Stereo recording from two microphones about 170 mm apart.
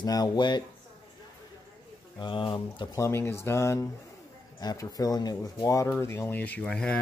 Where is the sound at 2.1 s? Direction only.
30° left (ahead or behind).